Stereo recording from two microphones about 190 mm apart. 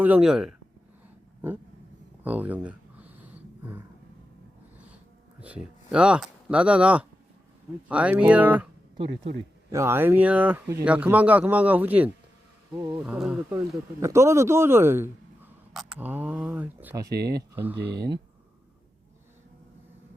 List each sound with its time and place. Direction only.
0.0 s speech: 5° right (ahead or behind)
2.2 s speech: 10° right (ahead or behind)
5.4 s speech: 5° right (ahead or behind)
9.7 s speech: 10° right (ahead or behind)
14.0 s speech: 15° right (ahead or behind)
17.1 s speech: 55° right (ahead or behind)
17.5 s speech: 10° right (ahead or behind)